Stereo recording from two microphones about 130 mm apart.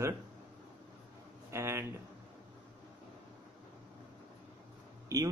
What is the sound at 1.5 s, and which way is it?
Speech, 20° right (ahead or behind).